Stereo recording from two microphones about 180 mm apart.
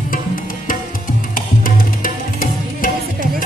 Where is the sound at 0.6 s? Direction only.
50° left (ahead or behind).